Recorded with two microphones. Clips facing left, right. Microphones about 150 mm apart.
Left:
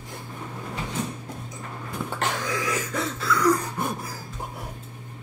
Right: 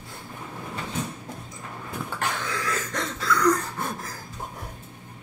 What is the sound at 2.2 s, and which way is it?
Throat clearing, 20° left (ahead or behind).